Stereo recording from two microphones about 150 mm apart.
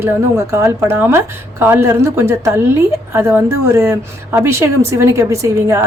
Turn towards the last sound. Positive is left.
turn(degrees=-15)  # may be behind; listen again after turning